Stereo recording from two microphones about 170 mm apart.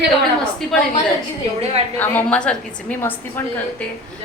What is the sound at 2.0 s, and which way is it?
A woman's voice, 10° left (ahead or behind).